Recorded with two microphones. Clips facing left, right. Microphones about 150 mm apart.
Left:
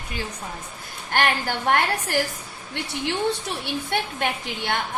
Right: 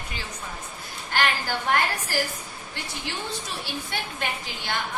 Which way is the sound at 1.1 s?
55° left (ahead or behind).